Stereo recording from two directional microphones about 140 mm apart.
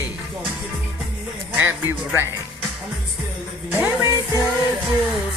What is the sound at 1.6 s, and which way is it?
Music, 15° right (ahead or behind).